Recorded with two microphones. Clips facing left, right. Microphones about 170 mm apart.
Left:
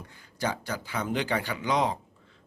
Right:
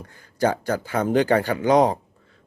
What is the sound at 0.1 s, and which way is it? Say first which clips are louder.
A man's voice: right 10 dB; 45° right (ahead or behind).